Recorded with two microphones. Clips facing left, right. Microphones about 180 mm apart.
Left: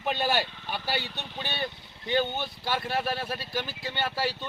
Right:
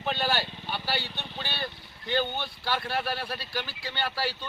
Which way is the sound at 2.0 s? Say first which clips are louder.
Left 2 dB; 20° left (ahead or behind).